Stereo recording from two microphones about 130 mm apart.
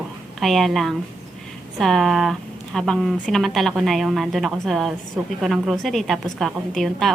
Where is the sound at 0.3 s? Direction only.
Centre (ahead or behind).